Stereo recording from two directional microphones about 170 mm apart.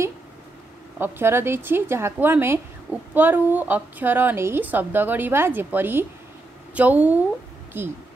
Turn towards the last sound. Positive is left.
turn(degrees=-10)  # may be behind; listen again after turning